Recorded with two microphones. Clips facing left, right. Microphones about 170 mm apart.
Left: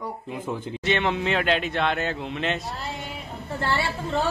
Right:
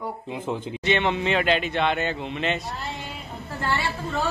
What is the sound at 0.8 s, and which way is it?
Speech, centre (ahead or behind).